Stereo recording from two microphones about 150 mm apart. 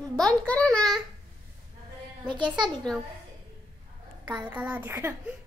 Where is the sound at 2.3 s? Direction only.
30° right (ahead or behind).